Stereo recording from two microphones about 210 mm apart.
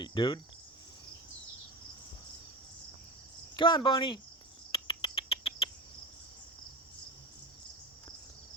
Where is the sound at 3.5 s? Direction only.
25° left (ahead or behind).